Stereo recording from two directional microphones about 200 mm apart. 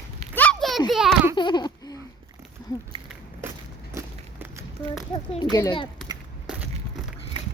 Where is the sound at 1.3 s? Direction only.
20° left (ahead or behind).